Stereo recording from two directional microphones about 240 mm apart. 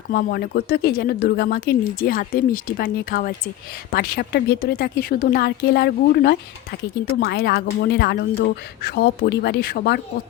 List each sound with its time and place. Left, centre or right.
0.1 s speech: left